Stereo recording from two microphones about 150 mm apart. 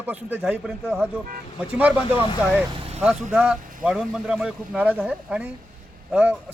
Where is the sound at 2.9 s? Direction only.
10° right (ahead or behind).